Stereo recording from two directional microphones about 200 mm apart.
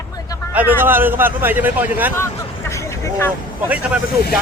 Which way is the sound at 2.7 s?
15° left (ahead or behind).